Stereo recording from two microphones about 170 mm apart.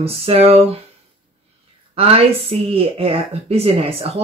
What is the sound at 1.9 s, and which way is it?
Speech, 35° right (ahead or behind).